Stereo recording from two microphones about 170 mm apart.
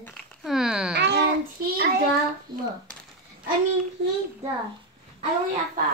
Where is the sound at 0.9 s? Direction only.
75° right (ahead or behind).